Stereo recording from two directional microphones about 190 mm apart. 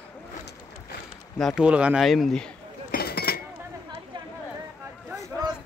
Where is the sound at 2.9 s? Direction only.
55° left (ahead or behind).